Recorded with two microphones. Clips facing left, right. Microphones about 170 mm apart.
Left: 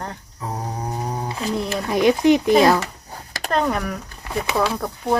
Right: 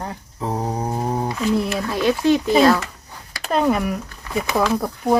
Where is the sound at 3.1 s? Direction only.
45° left (ahead or behind).